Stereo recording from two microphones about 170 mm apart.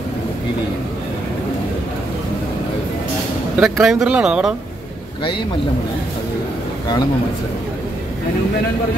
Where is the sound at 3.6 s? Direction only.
5° right (ahead or behind).